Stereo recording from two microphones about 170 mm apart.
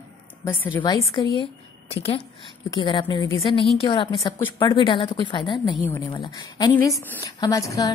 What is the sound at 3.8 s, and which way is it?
A woman's voice, 30° left (ahead or behind).